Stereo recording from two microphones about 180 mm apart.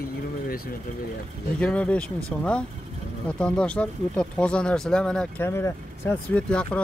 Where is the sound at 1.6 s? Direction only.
5° left (ahead or behind).